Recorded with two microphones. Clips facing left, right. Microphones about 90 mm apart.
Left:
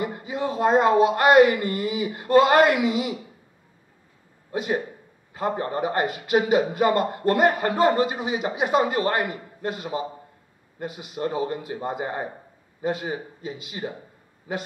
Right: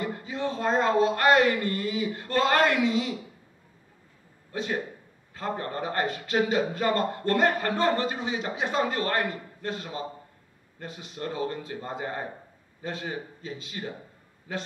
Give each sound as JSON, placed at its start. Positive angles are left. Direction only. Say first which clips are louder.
{"t": 0.0, "sound": "a man's voice", "louder": "left 3 dB", "side_deg": 10}
{"t": 4.5, "sound": "a man's voice", "louder": "left 5 dB", "side_deg": 15}